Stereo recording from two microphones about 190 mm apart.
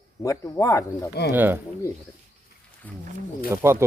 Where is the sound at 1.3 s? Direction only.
10° right (ahead or behind).